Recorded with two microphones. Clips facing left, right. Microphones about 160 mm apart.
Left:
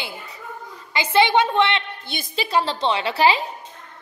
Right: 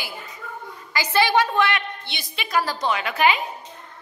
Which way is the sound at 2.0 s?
45° left (ahead or behind).